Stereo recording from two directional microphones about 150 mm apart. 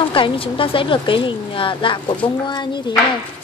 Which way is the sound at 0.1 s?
35° left (ahead or behind).